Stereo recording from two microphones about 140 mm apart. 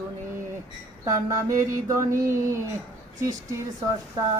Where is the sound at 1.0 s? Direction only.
25° right (ahead or behind).